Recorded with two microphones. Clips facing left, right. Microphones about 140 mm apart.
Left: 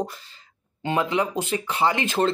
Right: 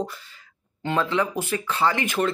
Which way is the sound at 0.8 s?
15° left (ahead or behind).